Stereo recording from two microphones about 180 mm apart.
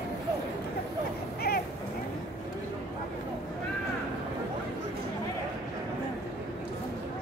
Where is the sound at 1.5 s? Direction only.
55° left (ahead or behind).